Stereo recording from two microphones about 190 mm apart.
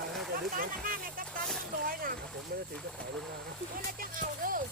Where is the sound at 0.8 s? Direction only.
50° right (ahead or behind).